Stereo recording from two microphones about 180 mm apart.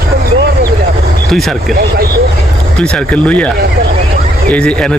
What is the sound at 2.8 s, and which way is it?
Speech, 5° left (ahead or behind).